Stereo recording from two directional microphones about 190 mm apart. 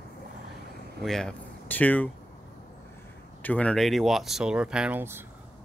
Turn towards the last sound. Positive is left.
turn(degrees=-10)  # may be behind; listen again after turning